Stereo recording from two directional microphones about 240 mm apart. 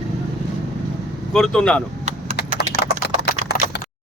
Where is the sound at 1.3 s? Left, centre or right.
Centre.